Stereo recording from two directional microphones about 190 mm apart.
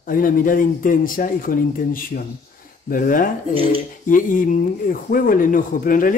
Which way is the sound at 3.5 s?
30° right (ahead or behind).